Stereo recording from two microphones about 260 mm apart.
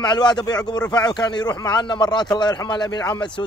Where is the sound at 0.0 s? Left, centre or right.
Centre.